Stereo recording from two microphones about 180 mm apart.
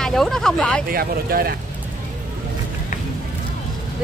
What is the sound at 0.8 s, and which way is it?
Speech, 55° right (ahead or behind).